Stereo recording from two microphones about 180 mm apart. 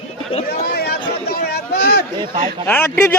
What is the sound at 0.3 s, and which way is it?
Speech, 35° left (ahead or behind).